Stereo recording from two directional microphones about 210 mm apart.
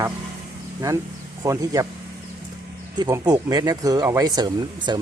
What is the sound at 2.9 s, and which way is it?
Speech, 20° right (ahead or behind).